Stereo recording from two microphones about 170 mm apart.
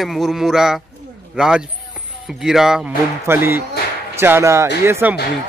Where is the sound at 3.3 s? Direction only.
15° right (ahead or behind).